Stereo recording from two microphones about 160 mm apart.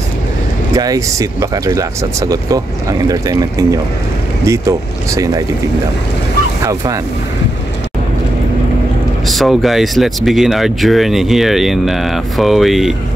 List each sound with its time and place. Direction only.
0.7 s speech: 20° right (ahead or behind)
6.6 s speech: 20° right (ahead or behind)
9.3 s speech: centre (ahead or behind)